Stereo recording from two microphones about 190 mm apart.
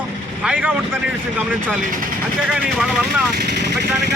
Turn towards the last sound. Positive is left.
turn(degrees=-65)  # may be behind; listen again after turning